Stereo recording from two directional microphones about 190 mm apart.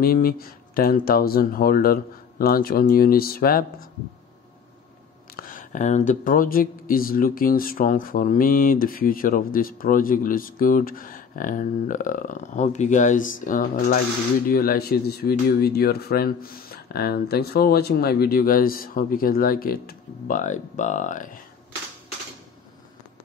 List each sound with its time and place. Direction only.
0.0 s speech: 50° left (ahead or behind)
5.3 s speech: 45° left (ahead or behind)